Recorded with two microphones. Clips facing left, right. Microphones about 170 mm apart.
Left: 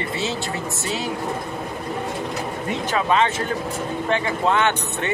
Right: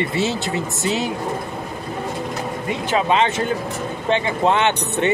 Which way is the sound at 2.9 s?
25° right (ahead or behind).